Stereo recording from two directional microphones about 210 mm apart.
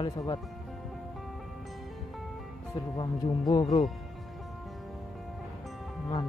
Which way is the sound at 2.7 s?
20° left (ahead or behind).